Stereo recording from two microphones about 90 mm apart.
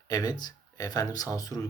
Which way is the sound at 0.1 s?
45° left (ahead or behind).